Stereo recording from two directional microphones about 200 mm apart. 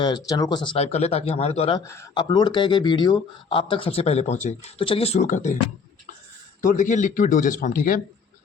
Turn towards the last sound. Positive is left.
turn(degrees=45)  # may be behind; listen again after turning